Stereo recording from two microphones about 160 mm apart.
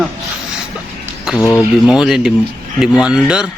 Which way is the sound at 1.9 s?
5° right (ahead or behind).